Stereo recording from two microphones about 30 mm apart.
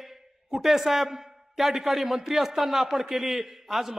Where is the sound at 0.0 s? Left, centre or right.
Centre.